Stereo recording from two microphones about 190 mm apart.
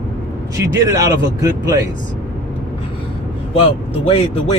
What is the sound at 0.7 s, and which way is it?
Speech, 15° right (ahead or behind).